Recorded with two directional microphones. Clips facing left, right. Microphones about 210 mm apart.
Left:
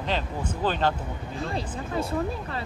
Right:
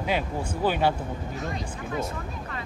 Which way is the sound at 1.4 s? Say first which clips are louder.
Left 2 dB; 30° left (ahead or behind).